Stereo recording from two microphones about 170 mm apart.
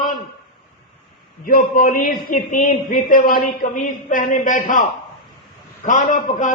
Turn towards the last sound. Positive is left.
turn(degrees=45)  # may be behind; listen again after turning